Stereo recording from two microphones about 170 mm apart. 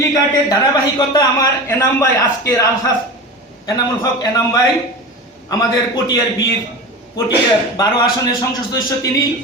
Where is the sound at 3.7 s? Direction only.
20° left (ahead or behind).